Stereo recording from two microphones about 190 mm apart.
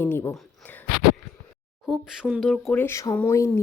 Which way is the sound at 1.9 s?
5° right (ahead or behind).